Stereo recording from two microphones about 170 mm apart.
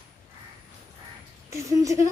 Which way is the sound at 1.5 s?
20° right (ahead or behind).